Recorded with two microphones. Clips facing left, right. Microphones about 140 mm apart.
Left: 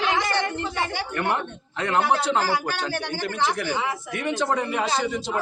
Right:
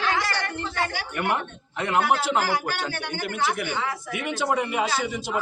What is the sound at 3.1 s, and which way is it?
Speech, 30° left (ahead or behind).